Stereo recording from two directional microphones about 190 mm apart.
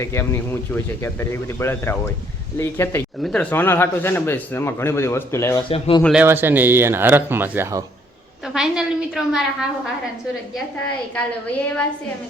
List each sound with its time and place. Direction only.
0.0 s a man's voice: 15° left (ahead or behind)
3.2 s a woman's voice: centre (ahead or behind)
3.5 s a man's voice: 10° left (ahead or behind)
5.6 s speech: 25° left (ahead or behind)
6.0 s a woman's voice: centre (ahead or behind)
6.2 s speech: 10° right (ahead or behind)
8.5 s a woman's voice: 5° right (ahead or behind)